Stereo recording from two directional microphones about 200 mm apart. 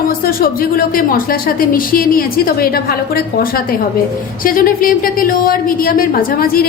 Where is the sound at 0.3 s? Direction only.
45° left (ahead or behind).